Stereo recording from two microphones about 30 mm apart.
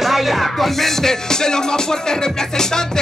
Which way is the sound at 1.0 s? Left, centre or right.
Centre.